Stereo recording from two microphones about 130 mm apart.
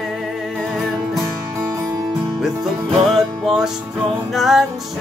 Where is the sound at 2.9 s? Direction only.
Centre (ahead or behind).